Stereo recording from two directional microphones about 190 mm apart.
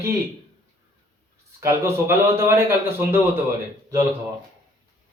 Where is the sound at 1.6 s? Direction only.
15° right (ahead or behind).